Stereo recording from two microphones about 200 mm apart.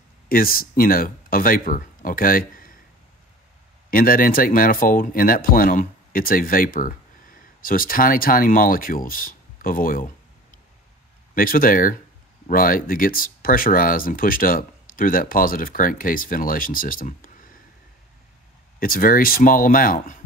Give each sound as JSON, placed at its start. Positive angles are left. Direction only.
{"t": 0.3, "sound": "speech", "side_deg": 45}
{"t": 3.9, "sound": "speech", "side_deg": 45}
{"t": 11.3, "sound": "speech", "side_deg": 45}
{"t": 18.8, "sound": "speech", "side_deg": 45}